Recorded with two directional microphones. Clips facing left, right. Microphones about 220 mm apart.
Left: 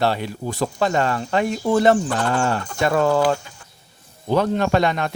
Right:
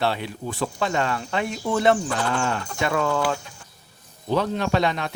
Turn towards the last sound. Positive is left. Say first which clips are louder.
# left 4 dB
turn(degrees=50)  # may be behind; listen again after turning